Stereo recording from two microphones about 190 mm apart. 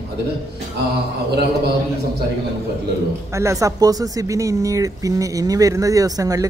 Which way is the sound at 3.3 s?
15° right (ahead or behind).